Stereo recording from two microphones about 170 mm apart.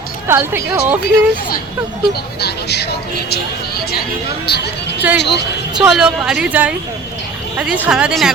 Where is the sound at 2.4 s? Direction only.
75° left (ahead or behind).